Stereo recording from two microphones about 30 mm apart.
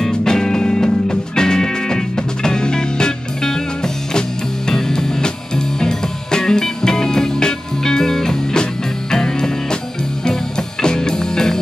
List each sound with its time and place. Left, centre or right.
0.1 s music: centre
10.8 s music: left